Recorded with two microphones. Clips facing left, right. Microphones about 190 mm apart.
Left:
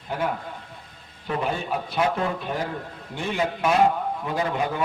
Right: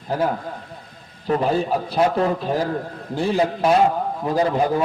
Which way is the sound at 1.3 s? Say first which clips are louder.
Right 7 dB; 35° right (ahead or behind).